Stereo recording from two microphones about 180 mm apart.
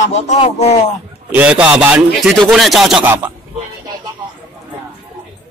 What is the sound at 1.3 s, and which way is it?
A man's voice, 5° right (ahead or behind).